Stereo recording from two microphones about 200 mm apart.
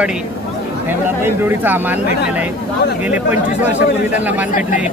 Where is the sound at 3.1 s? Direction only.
10° right (ahead or behind).